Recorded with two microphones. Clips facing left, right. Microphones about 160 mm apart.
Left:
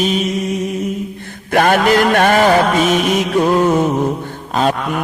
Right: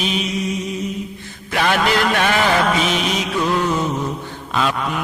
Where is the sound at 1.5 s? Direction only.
50° left (ahead or behind).